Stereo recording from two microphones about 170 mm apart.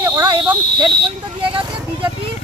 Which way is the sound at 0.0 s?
25° right (ahead or behind).